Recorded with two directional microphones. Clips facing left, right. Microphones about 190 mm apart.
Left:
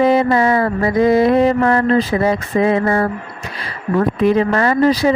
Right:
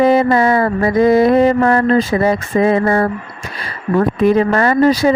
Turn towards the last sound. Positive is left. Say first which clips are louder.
# right 2 dB
turn(degrees=-45)  # may be behind; listen again after turning